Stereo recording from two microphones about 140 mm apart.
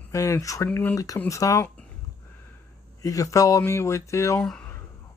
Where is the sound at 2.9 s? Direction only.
25° left (ahead or behind).